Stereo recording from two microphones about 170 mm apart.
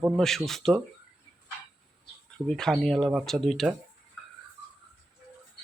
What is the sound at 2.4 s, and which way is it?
Speech, 5° left (ahead or behind).